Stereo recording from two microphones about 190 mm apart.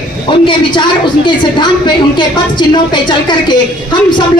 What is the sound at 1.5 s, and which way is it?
A woman's voice, 25° left (ahead or behind).